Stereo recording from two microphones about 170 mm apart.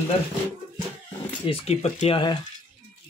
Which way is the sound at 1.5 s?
35° left (ahead or behind).